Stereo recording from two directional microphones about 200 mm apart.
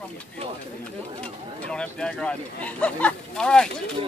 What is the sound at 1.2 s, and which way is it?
Speech, 5° left (ahead or behind).